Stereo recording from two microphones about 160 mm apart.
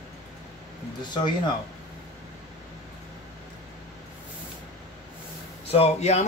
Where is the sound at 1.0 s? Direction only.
30° left (ahead or behind).